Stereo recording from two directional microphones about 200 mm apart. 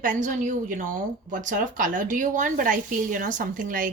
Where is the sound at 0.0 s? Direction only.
40° right (ahead or behind).